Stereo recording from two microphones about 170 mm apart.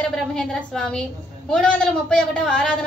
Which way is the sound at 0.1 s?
5° left (ahead or behind).